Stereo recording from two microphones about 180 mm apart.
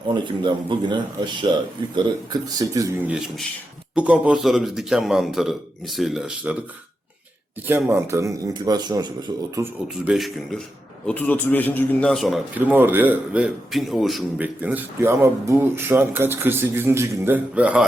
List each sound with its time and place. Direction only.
0.1 s speech: 25° right (ahead or behind)
3.1 s a man's voice: centre (ahead or behind)
7.7 s a man's voice: 10° right (ahead or behind)
10.1 s a man's voice: centre (ahead or behind)
12.5 s a man's voice: 10° right (ahead or behind)